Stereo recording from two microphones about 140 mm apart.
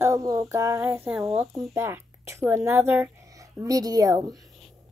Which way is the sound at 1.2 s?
Centre (ahead or behind).